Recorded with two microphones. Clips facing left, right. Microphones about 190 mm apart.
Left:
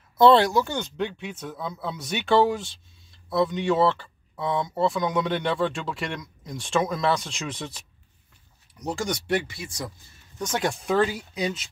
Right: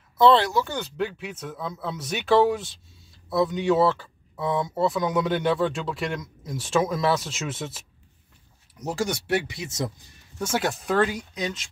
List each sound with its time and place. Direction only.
0.2 s speech: centre (ahead or behind)
9.5 s speech: 20° right (ahead or behind)
10.4 s speech: 5° right (ahead or behind)